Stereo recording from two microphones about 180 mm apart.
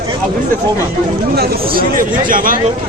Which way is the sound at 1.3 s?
60° right (ahead or behind).